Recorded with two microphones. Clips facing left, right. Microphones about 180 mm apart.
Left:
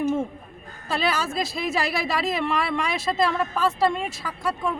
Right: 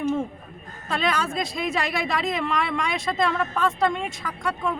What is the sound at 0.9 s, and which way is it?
Speech, 5° left (ahead or behind).